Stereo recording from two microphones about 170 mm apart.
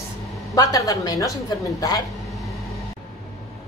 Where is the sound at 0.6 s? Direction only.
20° left (ahead or behind).